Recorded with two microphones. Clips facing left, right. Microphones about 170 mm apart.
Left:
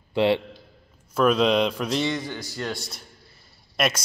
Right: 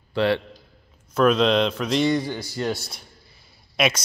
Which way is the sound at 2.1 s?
15° right (ahead or behind).